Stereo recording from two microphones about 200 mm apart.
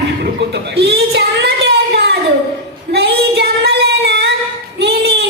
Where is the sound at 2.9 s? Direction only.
55° right (ahead or behind).